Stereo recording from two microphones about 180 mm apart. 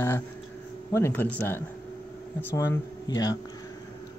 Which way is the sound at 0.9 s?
10° left (ahead or behind).